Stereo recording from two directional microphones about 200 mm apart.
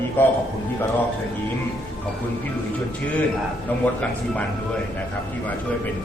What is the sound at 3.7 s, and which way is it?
Speech, 10° left (ahead or behind).